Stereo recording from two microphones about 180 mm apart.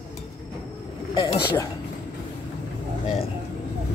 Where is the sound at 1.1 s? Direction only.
25° left (ahead or behind).